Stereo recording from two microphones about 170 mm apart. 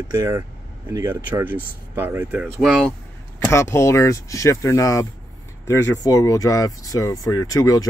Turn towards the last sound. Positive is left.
turn(degrees=20)  # may be behind; listen again after turning